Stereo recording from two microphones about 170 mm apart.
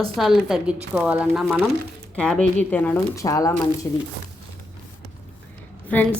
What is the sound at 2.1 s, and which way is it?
Speech, 5° left (ahead or behind).